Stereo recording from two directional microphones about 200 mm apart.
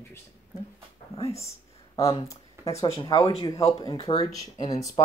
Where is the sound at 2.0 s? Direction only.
30° left (ahead or behind).